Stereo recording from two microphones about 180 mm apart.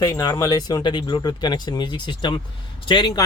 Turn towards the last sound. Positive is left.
turn(degrees=25)  # may be behind; listen again after turning